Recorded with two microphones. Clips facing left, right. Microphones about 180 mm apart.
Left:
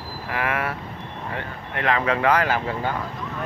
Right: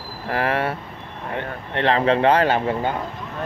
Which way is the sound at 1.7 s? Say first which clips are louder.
Right 4 dB; 30° right (ahead or behind).